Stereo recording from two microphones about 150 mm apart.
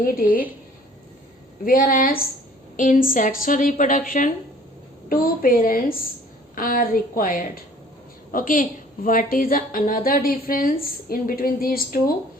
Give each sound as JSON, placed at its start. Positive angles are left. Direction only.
{"t": 0.0, "sound": "a woman's voice", "side_deg": 70}
{"t": 1.6, "sound": "a woman's voice", "side_deg": 70}
{"t": 2.7, "sound": "a woman's voice", "side_deg": 60}